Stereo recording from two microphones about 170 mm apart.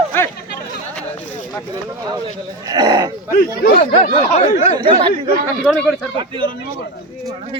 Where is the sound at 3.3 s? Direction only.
55° left (ahead or behind); by 4.8 s 40° left (ahead or behind).